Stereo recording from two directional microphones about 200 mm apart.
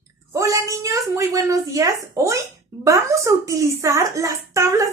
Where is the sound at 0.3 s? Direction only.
15° right (ahead or behind).